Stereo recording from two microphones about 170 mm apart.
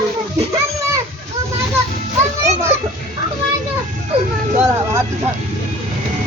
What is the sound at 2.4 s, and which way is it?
Children playing, 40° right (ahead or behind).